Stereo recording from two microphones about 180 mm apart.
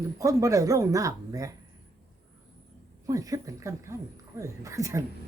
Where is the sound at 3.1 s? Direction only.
20° right (ahead or behind).